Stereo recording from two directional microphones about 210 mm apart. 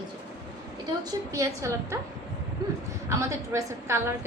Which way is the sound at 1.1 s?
15° right (ahead or behind).